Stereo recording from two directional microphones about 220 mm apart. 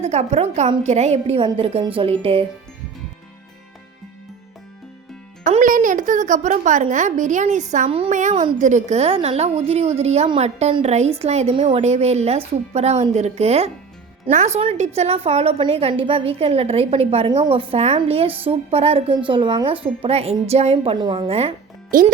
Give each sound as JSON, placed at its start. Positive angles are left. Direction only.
{"t": 0.0, "sound": "a woman's voice", "side_deg": -30}
{"t": 5.5, "sound": "a woman's voice", "side_deg": -35}
{"t": 21.8, "sound": "a child's voice", "side_deg": -40}